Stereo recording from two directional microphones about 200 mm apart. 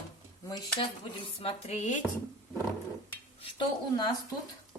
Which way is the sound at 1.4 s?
30° left (ahead or behind).